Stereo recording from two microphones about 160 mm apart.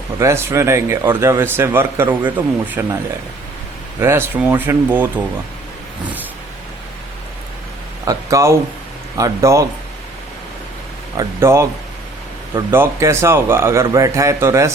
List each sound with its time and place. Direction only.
0.2 s speech: 15° right (ahead or behind)
4.0 s speech: 15° right (ahead or behind)
8.0 s speech: 20° right (ahead or behind)
11.2 s speech: 15° right (ahead or behind)